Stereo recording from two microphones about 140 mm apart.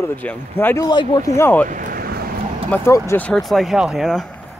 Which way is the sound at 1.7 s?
75° right (ahead or behind).